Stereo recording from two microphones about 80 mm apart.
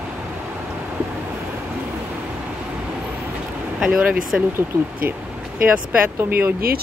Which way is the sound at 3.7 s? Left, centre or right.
Centre.